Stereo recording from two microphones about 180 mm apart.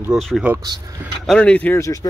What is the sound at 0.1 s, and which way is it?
Speech, centre (ahead or behind).